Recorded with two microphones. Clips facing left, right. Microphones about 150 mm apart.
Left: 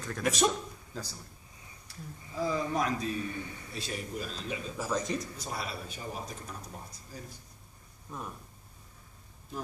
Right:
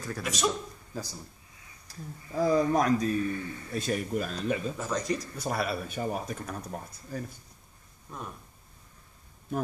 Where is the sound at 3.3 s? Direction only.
10° left (ahead or behind).